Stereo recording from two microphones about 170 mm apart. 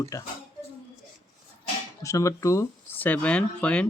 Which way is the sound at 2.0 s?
20° left (ahead or behind).